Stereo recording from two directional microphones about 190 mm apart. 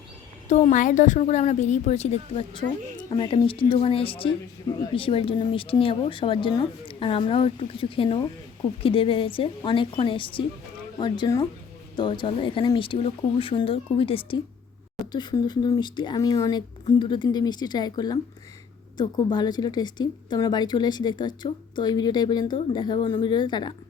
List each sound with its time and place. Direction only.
0.4 s a woman's voice: 35° left (ahead or behind)